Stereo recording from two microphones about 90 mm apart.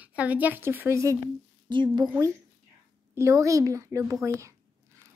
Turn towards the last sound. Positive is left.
turn(degrees=-35)  # may be behind; listen again after turning